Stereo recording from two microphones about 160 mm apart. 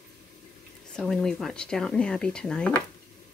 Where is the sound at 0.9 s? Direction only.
5° left (ahead or behind).